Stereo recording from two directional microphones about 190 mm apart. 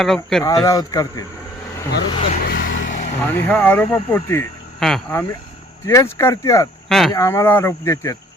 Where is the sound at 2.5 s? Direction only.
70° left (ahead or behind).